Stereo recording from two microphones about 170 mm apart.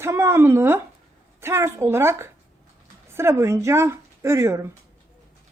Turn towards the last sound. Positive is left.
turn(degrees=-15)  # may be behind; listen again after turning